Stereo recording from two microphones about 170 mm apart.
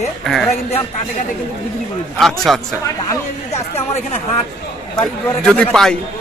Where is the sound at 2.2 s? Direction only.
Centre (ahead or behind).